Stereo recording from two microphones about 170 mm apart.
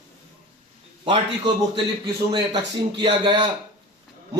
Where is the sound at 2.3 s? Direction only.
25° right (ahead or behind).